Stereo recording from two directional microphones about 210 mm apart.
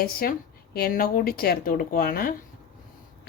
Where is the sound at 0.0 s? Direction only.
45° left (ahead or behind).